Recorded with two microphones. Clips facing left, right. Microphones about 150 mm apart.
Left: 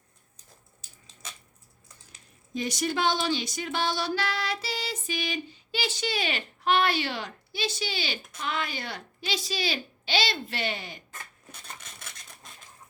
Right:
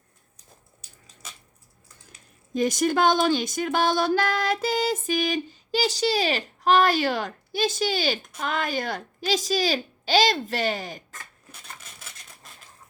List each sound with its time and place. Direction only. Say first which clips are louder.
0.3 s a sound: right 3 dB; 25° left (ahead or behind)
2.5 s music: right 7 dB; 45° right (ahead or behind)
11.5 s rub: even; 5° right (ahead or behind)